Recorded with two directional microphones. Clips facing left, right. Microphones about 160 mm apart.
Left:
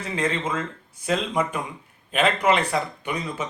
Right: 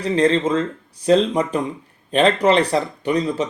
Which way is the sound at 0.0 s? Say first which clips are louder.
Right 9 dB; 35° right (ahead or behind).